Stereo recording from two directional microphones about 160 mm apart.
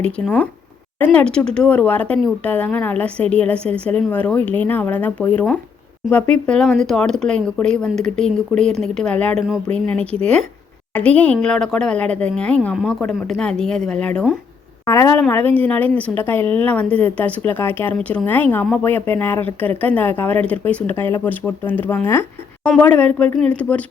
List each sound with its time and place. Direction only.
0.0 s a woman's voice: 5° left (ahead or behind)
14.8 s a woman's voice: 15° left (ahead or behind)